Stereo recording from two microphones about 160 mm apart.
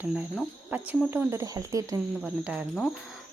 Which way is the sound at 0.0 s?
10° right (ahead or behind).